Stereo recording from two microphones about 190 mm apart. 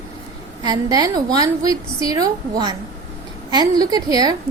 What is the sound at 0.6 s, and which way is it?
A woman's voice, 20° right (ahead or behind).